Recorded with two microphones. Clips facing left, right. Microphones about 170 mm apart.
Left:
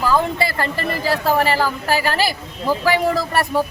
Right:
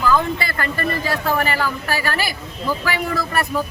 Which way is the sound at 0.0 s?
30° left (ahead or behind).